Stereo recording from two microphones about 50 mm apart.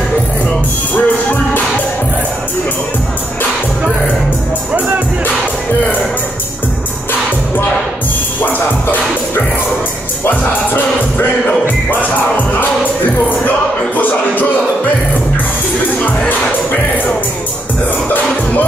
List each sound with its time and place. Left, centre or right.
0.9 s music: left
4.7 s music: right
8.4 s music: left